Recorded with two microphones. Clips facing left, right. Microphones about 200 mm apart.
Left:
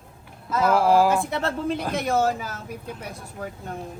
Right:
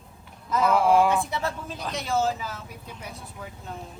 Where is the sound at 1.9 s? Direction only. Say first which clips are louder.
Left 1 dB; 55° left (ahead or behind).